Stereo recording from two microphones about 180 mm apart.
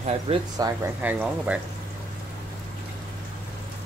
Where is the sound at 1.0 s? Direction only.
10° right (ahead or behind).